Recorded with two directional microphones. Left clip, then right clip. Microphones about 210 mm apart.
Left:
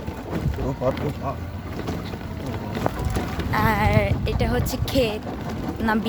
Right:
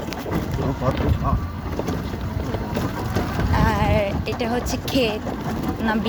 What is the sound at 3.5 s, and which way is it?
Speech, 15° left (ahead or behind).